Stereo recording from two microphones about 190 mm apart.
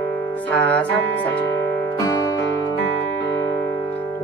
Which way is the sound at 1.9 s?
20° left (ahead or behind).